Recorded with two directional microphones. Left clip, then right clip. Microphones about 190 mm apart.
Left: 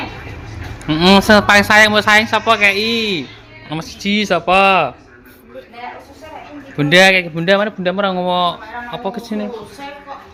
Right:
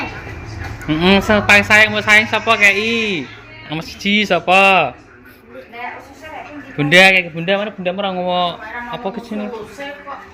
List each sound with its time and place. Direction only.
0.9 s speech: 15° left (ahead or behind)
1.3 s speech: 30° left (ahead or behind)
2.1 s speech: 15° left (ahead or behind)
6.7 s speech: 15° left (ahead or behind)
7.3 s speech: 30° left (ahead or behind)
8.3 s a man's voice: 15° left (ahead or behind)